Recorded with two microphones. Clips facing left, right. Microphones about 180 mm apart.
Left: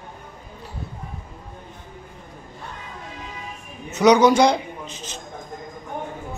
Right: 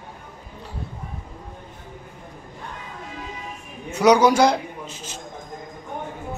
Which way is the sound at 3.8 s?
10° right (ahead or behind).